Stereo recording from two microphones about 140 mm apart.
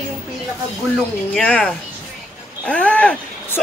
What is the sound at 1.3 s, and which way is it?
Speech, 5° left (ahead or behind).